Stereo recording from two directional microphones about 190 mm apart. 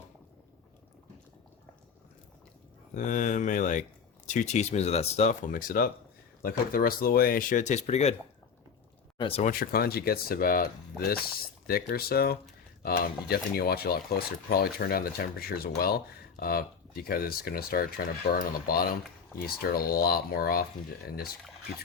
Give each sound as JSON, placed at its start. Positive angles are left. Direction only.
{"t": 2.9, "sound": "speech", "side_deg": 40}
{"t": 9.1, "sound": "speech", "side_deg": 30}
{"t": 9.5, "sound": "speech", "side_deg": 50}